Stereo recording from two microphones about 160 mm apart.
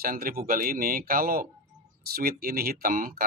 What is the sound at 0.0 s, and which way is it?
Speech, 65° right (ahead or behind).